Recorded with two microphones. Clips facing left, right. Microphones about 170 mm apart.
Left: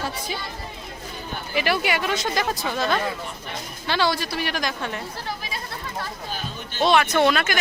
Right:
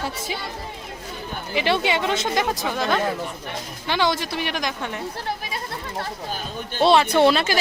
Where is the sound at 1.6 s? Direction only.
25° right (ahead or behind).